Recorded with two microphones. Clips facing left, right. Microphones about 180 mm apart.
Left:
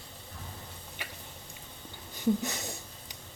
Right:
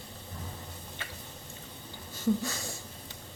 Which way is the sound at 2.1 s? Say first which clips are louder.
Even; 20° left (ahead or behind).